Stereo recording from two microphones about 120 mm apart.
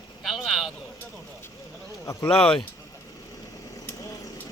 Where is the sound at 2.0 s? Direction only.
25° left (ahead or behind).